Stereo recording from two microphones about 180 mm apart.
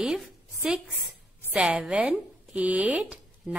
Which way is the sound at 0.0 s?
5° right (ahead or behind).